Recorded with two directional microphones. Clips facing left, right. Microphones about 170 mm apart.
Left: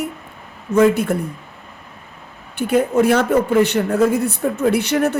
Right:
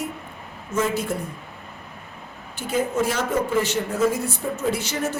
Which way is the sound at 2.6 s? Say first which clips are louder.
Left 8 dB; 60° left (ahead or behind).